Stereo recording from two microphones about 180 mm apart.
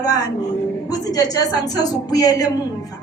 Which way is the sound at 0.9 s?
20° left (ahead or behind).